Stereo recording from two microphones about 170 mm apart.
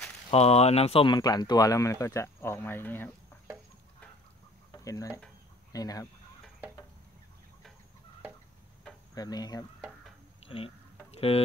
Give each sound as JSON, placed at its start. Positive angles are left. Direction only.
{"t": 0.3, "sound": "speech", "side_deg": 35}
{"t": 4.7, "sound": "speech", "side_deg": 20}
{"t": 9.1, "sound": "speech", "side_deg": 20}
{"t": 9.8, "sound": "a sound", "side_deg": -5}
{"t": 10.4, "sound": "insect", "side_deg": 35}
{"t": 11.1, "sound": "speech", "side_deg": 35}